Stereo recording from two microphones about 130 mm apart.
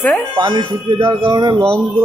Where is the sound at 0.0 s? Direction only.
10° left (ahead or behind).